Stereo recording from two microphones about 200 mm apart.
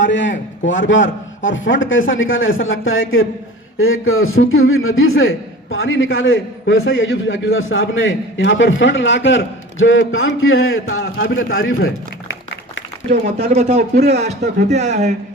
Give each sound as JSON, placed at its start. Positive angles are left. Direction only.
{"t": 0.0, "sound": "a man's voice", "side_deg": 65}
{"t": 5.7, "sound": "a man's voice", "side_deg": 80}
{"t": 13.4, "sound": "speech", "side_deg": -30}
{"t": 13.9, "sound": "a man's voice", "side_deg": -50}
{"t": 14.7, "sound": "speech", "side_deg": -35}